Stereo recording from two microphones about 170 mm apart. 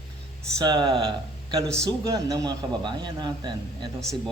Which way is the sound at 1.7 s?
20° right (ahead or behind).